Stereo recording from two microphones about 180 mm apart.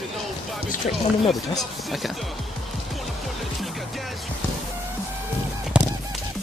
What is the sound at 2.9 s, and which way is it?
Music, centre (ahead or behind).